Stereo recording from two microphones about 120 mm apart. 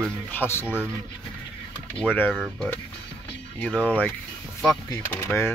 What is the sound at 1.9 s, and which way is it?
Speech, 10° left (ahead or behind).